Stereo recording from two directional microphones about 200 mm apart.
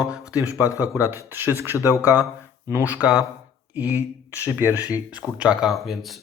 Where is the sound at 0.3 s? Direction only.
15° left (ahead or behind).